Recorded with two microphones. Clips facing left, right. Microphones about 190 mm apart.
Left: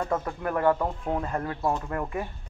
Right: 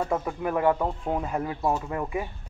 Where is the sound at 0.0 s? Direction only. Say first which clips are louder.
Right 1 dB; 10° right (ahead or behind).